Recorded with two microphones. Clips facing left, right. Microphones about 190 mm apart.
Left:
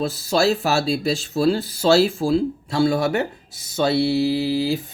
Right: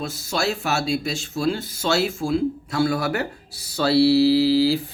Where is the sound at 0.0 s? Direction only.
35° left (ahead or behind); by 4.8 s 20° left (ahead or behind).